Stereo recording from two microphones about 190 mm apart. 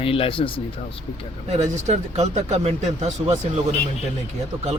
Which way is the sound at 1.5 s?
35° right (ahead or behind).